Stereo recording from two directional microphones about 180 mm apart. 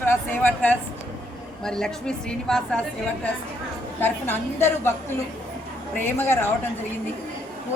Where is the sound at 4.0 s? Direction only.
10° left (ahead or behind).